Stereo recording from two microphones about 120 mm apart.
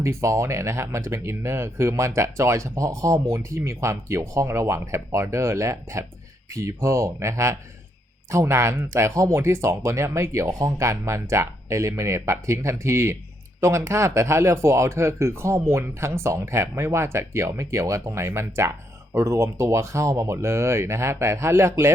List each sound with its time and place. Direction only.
0.0 s speech: 25° right (ahead or behind)